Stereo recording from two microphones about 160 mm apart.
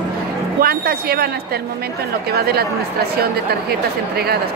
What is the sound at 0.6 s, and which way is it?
Speech, 75° right (ahead or behind).